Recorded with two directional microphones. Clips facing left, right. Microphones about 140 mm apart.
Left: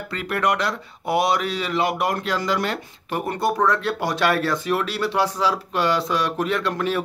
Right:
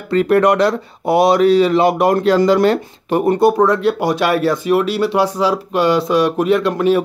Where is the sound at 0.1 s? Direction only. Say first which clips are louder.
Right 11 dB; 35° right (ahead or behind).